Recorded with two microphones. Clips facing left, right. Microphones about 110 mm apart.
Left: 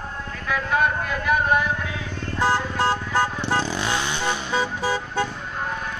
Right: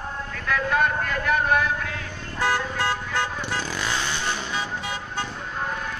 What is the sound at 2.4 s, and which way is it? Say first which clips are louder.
Vehicle: left 3 dB; 30° left (ahead or behind).